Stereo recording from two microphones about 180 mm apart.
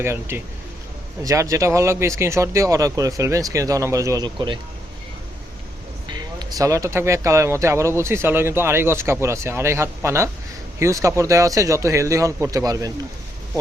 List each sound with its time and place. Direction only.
0.0 s speech: 15° right (ahead or behind)
6.6 s speech: 15° right (ahead or behind)